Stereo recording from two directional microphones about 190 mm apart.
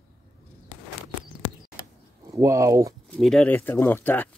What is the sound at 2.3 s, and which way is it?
Speech, 15° right (ahead or behind).